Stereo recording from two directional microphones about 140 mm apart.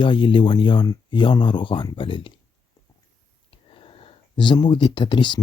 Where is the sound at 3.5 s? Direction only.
40° left (ahead or behind).